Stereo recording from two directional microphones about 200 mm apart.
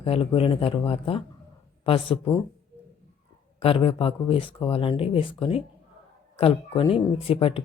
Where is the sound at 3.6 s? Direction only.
30° left (ahead or behind).